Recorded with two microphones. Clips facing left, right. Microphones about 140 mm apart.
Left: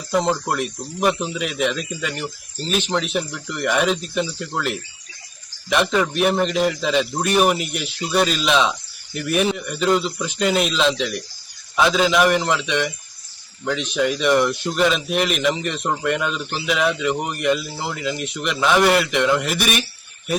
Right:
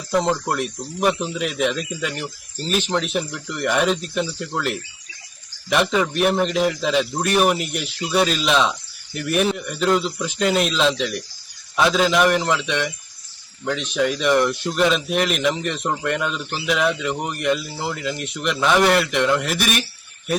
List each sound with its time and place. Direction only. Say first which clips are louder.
0.1 s speech: even; 5° left (ahead or behind)